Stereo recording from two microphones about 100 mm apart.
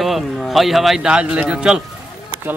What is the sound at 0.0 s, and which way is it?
Speech, centre (ahead or behind).